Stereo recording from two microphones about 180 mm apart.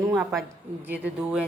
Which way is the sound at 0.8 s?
10° right (ahead or behind).